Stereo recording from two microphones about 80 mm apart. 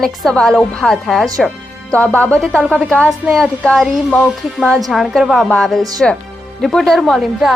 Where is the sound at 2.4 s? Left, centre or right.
Centre.